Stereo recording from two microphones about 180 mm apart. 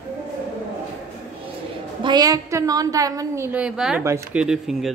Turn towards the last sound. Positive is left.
turn(degrees=0)  # may be behind; listen again after turning